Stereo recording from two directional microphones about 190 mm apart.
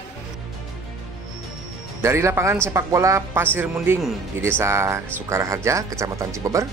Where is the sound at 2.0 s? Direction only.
15° right (ahead or behind).